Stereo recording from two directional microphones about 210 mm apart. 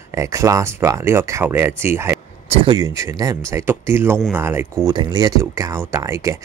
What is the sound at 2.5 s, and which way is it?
Speech, 25° right (ahead or behind).